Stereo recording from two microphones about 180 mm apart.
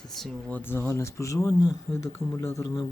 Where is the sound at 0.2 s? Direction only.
5° left (ahead or behind).